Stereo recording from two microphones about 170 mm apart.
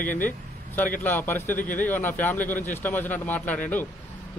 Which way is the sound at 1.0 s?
10° left (ahead or behind).